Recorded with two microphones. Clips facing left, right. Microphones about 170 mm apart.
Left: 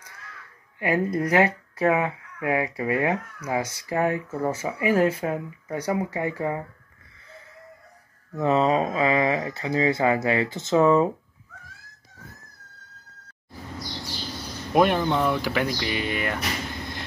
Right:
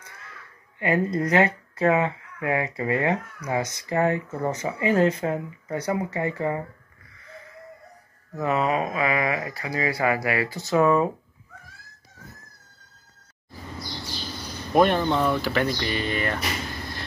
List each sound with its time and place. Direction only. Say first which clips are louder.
0.7 s speech: even; 15° left (ahead or behind)
8.4 s speech: left 3 dB; 30° left (ahead or behind)
14.7 s speech: right 1 dB; 10° left (ahead or behind)